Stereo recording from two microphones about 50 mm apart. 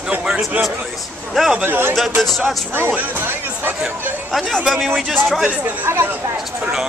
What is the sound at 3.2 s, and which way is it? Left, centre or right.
Speech, right.